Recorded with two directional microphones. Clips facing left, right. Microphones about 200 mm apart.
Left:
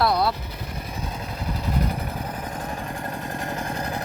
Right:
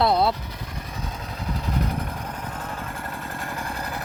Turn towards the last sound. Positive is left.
turn(degrees=20)  # may be behind; listen again after turning